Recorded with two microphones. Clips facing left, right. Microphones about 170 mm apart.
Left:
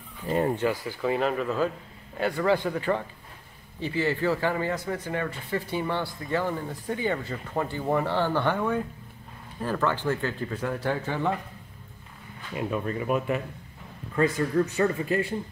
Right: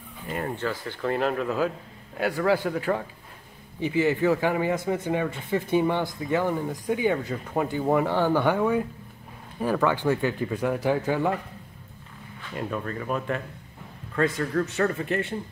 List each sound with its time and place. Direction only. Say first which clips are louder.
0.4 s speech: left 4 dB; 15° left (ahead or behind)
1.0 s speech: even; centre (ahead or behind)
12.5 s speech: left 2 dB; 10° left (ahead or behind)